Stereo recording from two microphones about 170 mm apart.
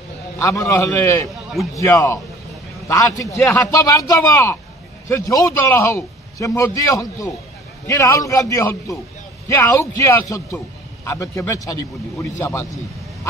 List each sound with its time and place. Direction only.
0.4 s a man's voice: 15° left (ahead or behind)